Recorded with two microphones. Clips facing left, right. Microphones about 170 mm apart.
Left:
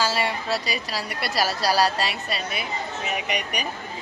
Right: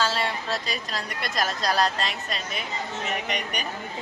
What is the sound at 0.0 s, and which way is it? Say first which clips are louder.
A woman's voice: left 2 dB; 10° left (ahead or behind).